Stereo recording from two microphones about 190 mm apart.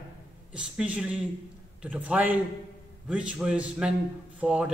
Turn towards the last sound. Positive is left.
turn(degrees=-5)  # may be behind; listen again after turning